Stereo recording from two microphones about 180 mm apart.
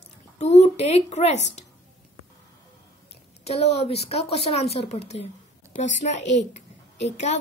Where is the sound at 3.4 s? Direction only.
35° left (ahead or behind).